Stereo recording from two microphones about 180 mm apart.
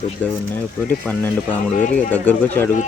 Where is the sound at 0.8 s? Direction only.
10° left (ahead or behind).